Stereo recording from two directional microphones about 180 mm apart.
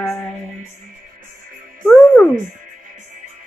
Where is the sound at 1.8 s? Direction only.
5° left (ahead or behind).